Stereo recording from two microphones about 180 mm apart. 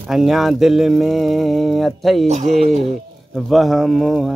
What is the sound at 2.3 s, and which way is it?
Speech, 40° right (ahead or behind).